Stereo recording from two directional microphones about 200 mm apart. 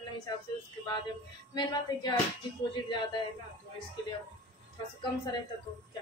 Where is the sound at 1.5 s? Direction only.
20° left (ahead or behind).